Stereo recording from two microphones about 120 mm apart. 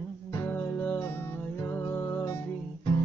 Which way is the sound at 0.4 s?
15° left (ahead or behind).